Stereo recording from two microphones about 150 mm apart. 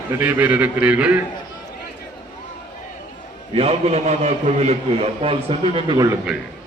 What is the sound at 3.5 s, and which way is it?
A man's voice, 40° right (ahead or behind).